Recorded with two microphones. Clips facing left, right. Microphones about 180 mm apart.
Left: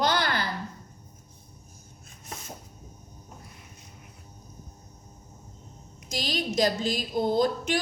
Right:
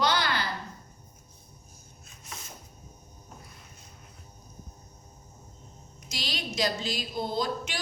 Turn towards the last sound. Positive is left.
turn(degrees=50)  # may be behind; listen again after turning